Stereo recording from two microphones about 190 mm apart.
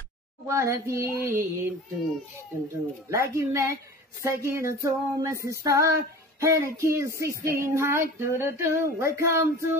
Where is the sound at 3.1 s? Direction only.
15° right (ahead or behind).